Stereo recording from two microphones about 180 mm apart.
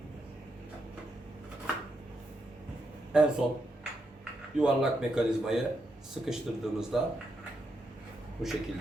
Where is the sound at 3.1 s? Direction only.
5° right (ahead or behind).